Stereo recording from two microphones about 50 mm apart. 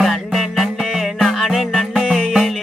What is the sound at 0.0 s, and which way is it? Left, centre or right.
Music, centre.